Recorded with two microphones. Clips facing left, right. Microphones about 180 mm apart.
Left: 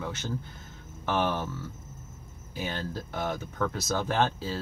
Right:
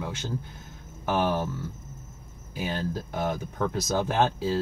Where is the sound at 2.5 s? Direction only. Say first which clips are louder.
Right 3 dB; 15° right (ahead or behind).